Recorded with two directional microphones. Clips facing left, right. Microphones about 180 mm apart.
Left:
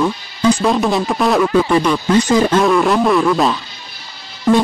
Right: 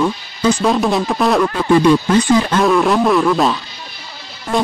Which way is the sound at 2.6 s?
Centre (ahead or behind).